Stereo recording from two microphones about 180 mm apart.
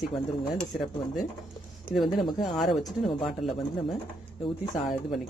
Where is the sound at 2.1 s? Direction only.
25° left (ahead or behind).